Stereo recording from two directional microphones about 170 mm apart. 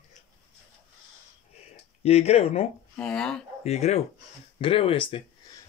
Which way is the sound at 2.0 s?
40° left (ahead or behind).